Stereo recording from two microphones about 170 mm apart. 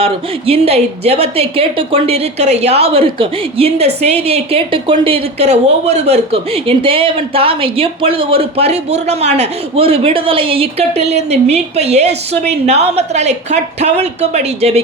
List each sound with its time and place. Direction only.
0.0 s a woman's voice: 35° right (ahead or behind)